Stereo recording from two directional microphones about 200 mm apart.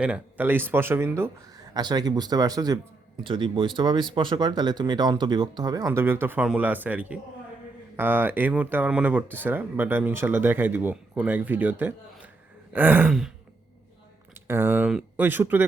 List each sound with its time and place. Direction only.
0.0 s speech: 5° right (ahead or behind)
14.4 s speech: 10° right (ahead or behind)